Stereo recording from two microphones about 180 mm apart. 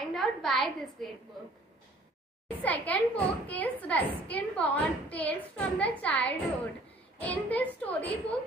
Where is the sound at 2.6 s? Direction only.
10° left (ahead or behind).